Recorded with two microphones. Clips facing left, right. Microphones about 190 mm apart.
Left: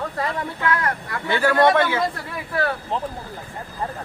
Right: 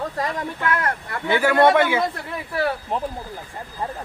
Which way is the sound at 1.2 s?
10° right (ahead or behind).